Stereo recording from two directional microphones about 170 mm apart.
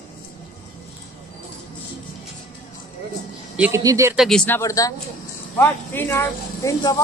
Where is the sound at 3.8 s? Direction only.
20° right (ahead or behind).